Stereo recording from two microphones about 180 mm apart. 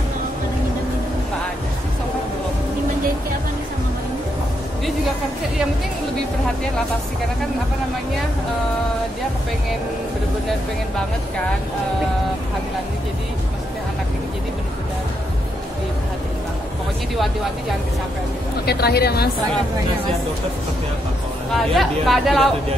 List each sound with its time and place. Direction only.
18.7 s a woman's voice: 60° left (ahead or behind)
21.5 s speech: centre (ahead or behind)